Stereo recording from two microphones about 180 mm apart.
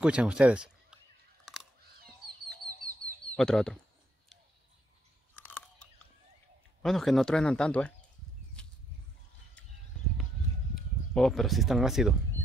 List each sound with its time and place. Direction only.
0.0 s speech: 5° right (ahead or behind)
1.4 s a sound: 5° right (ahead or behind)
2.8 s a sound: 50° right (ahead or behind)
3.3 s speech: 5° left (ahead or behind)
5.3 s crunch: 10° left (ahead or behind)
6.8 s speech: centre (ahead or behind)
11.1 s speech: centre (ahead or behind)